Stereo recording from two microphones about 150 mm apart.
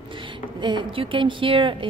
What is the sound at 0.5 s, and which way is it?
Speech, 30° right (ahead or behind).